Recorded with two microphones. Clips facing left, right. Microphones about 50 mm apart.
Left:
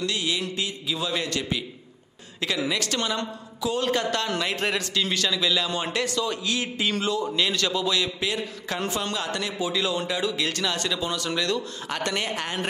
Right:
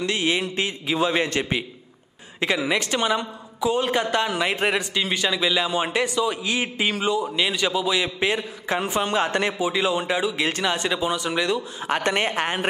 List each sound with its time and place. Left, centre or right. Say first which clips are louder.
0.0 s a man's voice: right 4 dB; right
9.1 s a woman's voice: right 7 dB; right; by 11.6 s centre
11.9 s a woman's voice: right 6 dB; right